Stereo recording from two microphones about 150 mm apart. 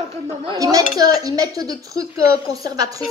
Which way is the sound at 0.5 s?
25° right (ahead or behind).